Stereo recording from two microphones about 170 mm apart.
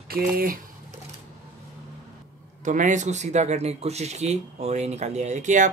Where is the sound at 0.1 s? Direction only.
60° right (ahead or behind).